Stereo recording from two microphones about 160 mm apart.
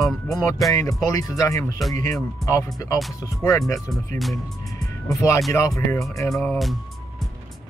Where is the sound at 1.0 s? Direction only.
20° left (ahead or behind).